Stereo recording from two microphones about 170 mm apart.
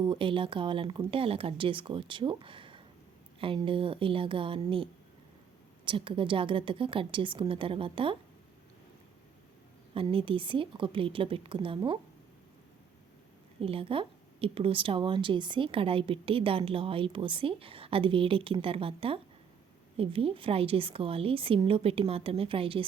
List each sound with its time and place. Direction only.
0.0 s a woman's voice: 30° right (ahead or behind)
9.9 s a woman's voice: 30° right (ahead or behind)
13.6 s a woman's voice: 35° right (ahead or behind)